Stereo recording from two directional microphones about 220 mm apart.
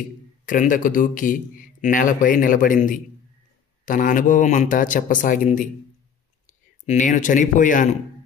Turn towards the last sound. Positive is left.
turn(degrees=35)  # may be behind; listen again after turning